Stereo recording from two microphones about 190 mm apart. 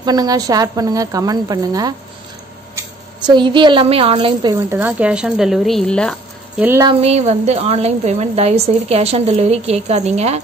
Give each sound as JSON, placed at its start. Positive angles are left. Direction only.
{"t": 0.0, "sound": "a woman's voice", "side_deg": -20}
{"t": 3.3, "sound": "a woman's voice", "side_deg": -25}
{"t": 6.5, "sound": "speech", "side_deg": -10}
{"t": 6.8, "sound": "a woman's voice", "side_deg": -30}